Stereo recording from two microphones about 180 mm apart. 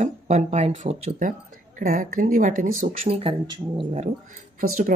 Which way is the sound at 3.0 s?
30° right (ahead or behind).